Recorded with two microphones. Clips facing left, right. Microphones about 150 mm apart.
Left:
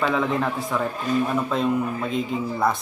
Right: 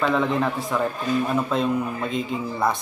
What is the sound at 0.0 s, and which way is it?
A man's voice, centre (ahead or behind).